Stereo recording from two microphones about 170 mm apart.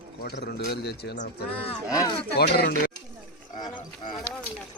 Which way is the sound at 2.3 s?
65° left (ahead or behind).